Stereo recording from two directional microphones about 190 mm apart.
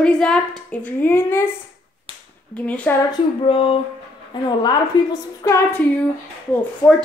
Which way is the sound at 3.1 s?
30° left (ahead or behind).